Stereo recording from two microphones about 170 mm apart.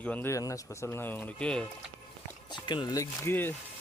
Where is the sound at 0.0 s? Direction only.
10° left (ahead or behind).